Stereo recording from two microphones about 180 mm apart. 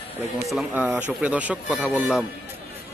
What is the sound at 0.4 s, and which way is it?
Speech, 5° right (ahead or behind).